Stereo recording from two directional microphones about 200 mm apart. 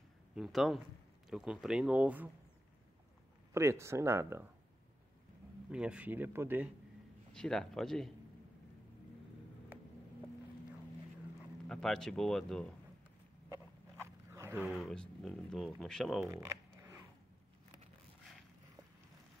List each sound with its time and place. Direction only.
0.4 s speech: centre (ahead or behind)
3.5 s speech: 15° right (ahead or behind)
5.7 s speech: 5° right (ahead or behind)
7.3 s speech: 5° left (ahead or behind)
11.7 s speech: 5° left (ahead or behind)
14.0 s speech: 15° right (ahead or behind); by 16.2 s 5° left (ahead or behind)
16.3 s a sound: 15° right (ahead or behind)